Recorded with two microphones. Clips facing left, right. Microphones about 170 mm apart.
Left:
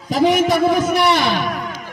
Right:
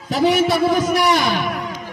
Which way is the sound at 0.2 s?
10° left (ahead or behind).